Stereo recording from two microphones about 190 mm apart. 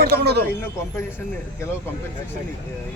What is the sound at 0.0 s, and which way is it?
Speech, 60° right (ahead or behind).